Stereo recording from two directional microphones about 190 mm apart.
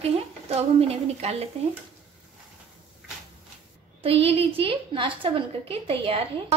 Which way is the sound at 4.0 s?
30° right (ahead or behind).